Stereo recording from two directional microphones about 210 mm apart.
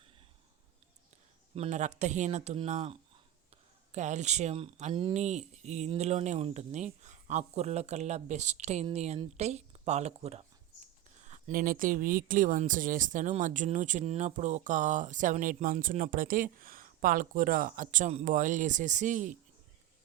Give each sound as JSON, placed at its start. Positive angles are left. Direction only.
{"t": 1.5, "sound": "speech", "side_deg": -30}
{"t": 3.9, "sound": "speech", "side_deg": -35}